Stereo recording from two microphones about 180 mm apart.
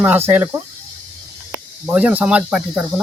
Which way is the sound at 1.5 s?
10° right (ahead or behind).